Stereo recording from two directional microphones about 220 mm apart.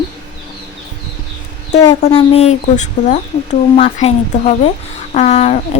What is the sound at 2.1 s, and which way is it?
Speech, 25° left (ahead or behind).